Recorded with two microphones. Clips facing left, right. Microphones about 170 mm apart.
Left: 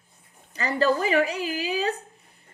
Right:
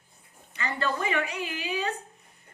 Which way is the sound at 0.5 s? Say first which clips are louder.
Left 7 dB; 35° left (ahead or behind).